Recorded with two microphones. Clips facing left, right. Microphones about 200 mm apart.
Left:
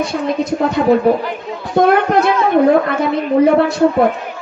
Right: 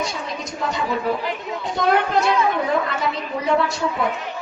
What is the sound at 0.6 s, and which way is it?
A woman's voice, 55° left (ahead or behind).